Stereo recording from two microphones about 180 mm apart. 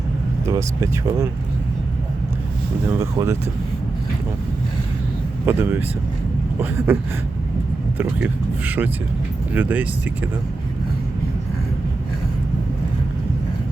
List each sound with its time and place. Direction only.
0.4 s speech: 20° right (ahead or behind)
3.0 s speech: 20° right (ahead or behind)
5.5 s speech: 10° right (ahead or behind)